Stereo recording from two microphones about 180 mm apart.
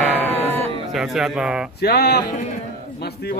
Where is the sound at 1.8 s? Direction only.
60° left (ahead or behind).